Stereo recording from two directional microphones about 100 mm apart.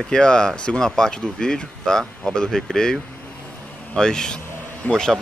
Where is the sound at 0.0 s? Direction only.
5° left (ahead or behind).